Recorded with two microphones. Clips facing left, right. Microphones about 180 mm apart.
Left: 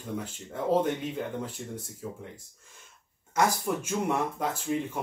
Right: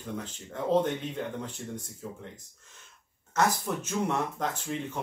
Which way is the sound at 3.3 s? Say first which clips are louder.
Left 1 dB; 10° left (ahead or behind).